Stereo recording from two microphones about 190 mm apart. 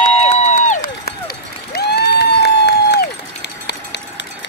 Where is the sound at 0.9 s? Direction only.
55° left (ahead or behind).